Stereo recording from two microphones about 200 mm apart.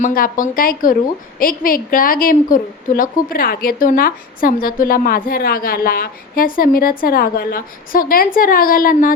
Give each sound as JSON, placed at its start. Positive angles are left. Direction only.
{"t": 0.0, "sound": "a woman's voice", "side_deg": 45}